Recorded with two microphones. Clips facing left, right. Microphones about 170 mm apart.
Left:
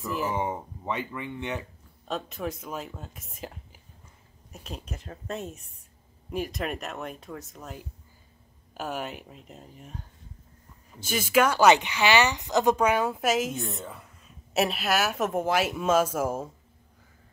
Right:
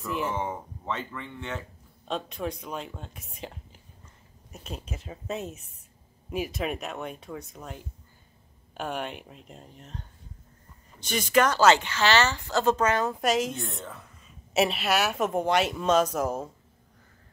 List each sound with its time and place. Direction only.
0.0 s speech: centre (ahead or behind)
0.4 s speech: 15° left (ahead or behind)
2.0 s speech: centre (ahead or behind)